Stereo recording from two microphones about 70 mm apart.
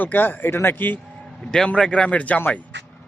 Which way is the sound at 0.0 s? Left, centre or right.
Left.